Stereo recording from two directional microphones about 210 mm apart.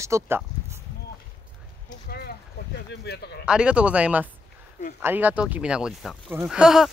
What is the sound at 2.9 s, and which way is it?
Speech, 50° left (ahead or behind).